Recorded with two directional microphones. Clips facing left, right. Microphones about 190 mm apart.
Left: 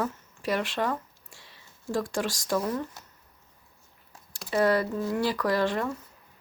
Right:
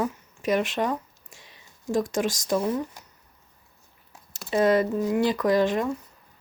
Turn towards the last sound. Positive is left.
turn(degrees=-20)  # may be behind; listen again after turning